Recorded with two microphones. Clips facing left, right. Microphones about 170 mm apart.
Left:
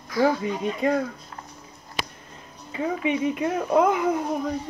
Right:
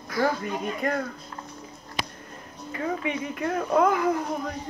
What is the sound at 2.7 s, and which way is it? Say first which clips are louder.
Speech: left 4 dB; 20° left (ahead or behind).